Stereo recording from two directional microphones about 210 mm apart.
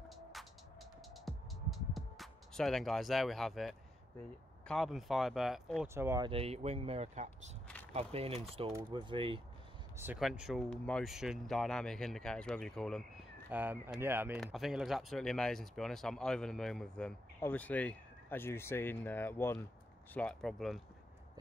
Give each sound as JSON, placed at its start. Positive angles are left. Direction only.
{"t": 0.1, "sound": "music", "side_deg": 0}
{"t": 4.6, "sound": "speech", "side_deg": 0}
{"t": 5.9, "sound": "speech", "side_deg": -15}
{"t": 9.9, "sound": "speech", "side_deg": -5}
{"t": 13.5, "sound": "speech", "side_deg": -10}